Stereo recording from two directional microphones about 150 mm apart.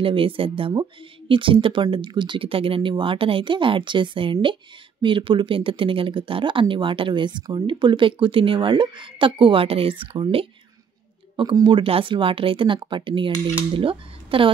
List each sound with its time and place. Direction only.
0.0 s speech: 35° right (ahead or behind)